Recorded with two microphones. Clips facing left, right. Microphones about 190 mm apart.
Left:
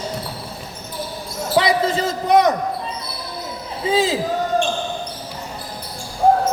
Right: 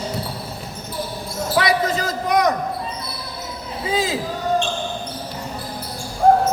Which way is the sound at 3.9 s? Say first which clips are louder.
Left 4 dB; 25° left (ahead or behind).